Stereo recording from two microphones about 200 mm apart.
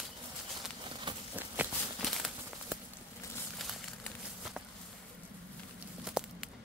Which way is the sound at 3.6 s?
Centre (ahead or behind).